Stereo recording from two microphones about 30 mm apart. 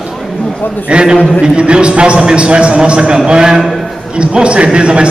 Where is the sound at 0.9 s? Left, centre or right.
Right.